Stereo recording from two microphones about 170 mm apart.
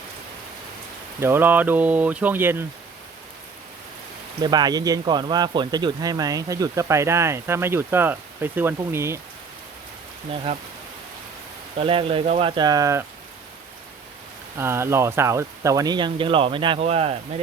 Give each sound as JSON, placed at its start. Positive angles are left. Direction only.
{"t": 1.2, "sound": "speech", "side_deg": -15}
{"t": 4.4, "sound": "speech", "side_deg": -25}
{"t": 10.5, "sound": "speech", "side_deg": -40}
{"t": 11.8, "sound": "speech", "side_deg": -30}
{"t": 14.6, "sound": "speech", "side_deg": -15}